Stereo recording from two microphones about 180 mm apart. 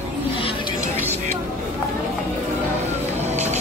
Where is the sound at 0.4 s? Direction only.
30° left (ahead or behind).